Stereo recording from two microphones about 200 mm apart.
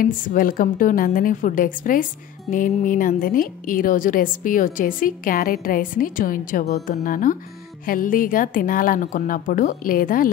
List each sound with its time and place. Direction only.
0.0 s a woman's voice: 45° left (ahead or behind)